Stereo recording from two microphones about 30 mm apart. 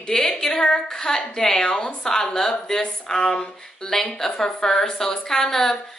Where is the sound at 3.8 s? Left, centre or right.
Centre.